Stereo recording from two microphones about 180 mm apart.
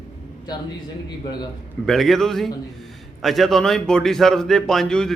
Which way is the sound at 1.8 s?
Centre (ahead or behind).